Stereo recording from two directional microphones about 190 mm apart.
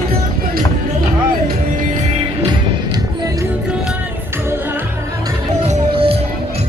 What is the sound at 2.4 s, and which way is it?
Music, 20° right (ahead or behind).